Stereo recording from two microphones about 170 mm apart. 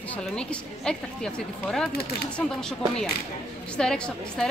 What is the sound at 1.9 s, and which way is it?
Speech, 65° left (ahead or behind).